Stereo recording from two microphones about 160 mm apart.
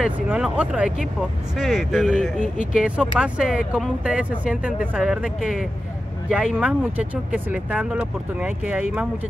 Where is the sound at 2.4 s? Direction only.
55° left (ahead or behind).